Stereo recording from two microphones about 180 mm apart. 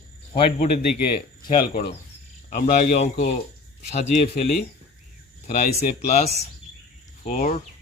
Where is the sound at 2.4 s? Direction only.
45° left (ahead or behind).